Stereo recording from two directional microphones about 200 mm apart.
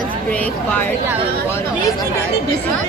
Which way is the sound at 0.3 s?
5° left (ahead or behind).